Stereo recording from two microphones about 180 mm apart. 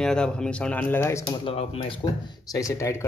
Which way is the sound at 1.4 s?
35° left (ahead or behind).